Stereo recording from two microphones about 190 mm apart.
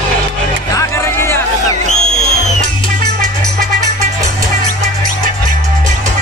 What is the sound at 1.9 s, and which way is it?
Music, 40° left (ahead or behind).